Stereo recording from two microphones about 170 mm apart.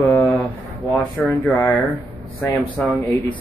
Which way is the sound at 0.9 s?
Centre (ahead or behind).